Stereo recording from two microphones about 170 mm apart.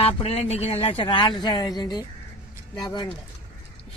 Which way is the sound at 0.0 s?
35° left (ahead or behind).